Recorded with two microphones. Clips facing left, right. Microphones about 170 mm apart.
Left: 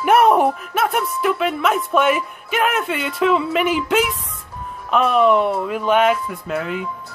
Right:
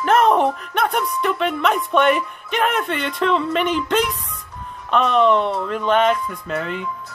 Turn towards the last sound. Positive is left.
turn(degrees=5)  # may be behind; listen again after turning